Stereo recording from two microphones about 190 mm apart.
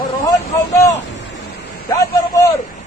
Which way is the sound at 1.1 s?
70° left (ahead or behind).